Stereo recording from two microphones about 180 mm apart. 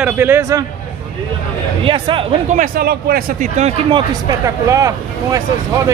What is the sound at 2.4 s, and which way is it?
Speech, 45° right (ahead or behind).